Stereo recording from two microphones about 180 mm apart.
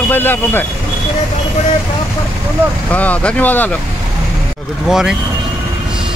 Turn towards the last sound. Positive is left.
turn(degrees=-5)  # may be behind; listen again after turning